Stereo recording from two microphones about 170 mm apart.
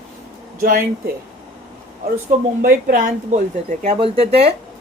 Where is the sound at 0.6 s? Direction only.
60° right (ahead or behind).